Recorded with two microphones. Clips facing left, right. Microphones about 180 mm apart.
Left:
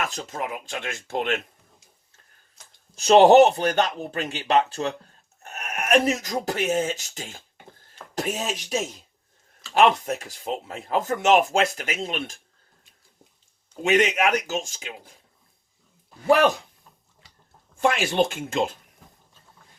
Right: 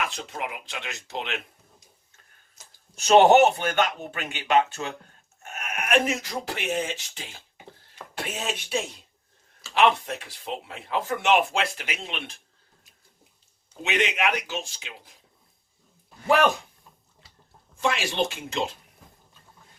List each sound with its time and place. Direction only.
0.0 s speech: 40° left (ahead or behind)
2.9 s speech: 35° left (ahead or behind)
14.2 s speech: 45° left (ahead or behind)
17.7 s speech: 50° left (ahead or behind)